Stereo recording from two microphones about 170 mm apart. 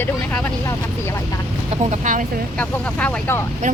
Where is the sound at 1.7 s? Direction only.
45° right (ahead or behind).